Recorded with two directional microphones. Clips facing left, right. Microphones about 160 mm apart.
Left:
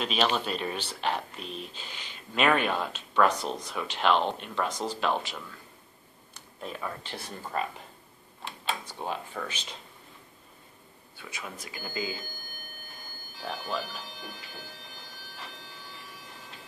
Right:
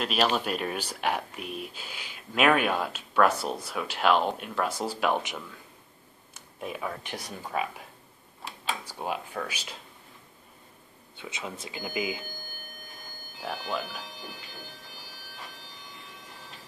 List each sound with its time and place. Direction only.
0.0 s speech: 5° right (ahead or behind)
6.6 s speech: 5° right (ahead or behind)
8.6 s speech: 10° right (ahead or behind)
11.1 s speech: 20° right (ahead or behind)
13.4 s speech: 5° right (ahead or behind)